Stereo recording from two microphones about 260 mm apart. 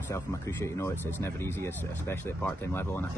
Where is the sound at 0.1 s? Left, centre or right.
Centre.